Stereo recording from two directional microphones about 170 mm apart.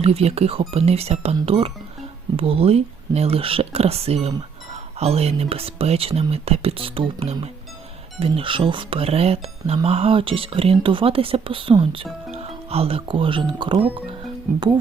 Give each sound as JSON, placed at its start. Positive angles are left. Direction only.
{"t": 0.0, "sound": "speech", "side_deg": -35}